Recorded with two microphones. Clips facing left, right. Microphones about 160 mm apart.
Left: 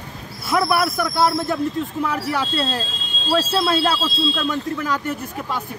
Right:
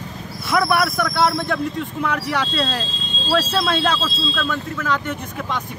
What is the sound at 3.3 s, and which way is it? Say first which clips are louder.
Speech: left 1 dB; 10° left (ahead or behind).